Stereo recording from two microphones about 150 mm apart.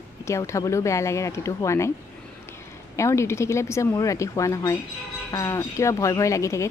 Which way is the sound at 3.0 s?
20° left (ahead or behind).